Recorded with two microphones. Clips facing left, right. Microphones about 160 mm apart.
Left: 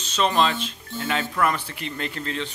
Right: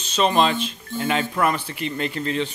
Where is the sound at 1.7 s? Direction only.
5° right (ahead or behind).